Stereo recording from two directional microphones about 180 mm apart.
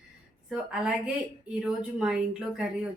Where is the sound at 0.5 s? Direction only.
5° right (ahead or behind).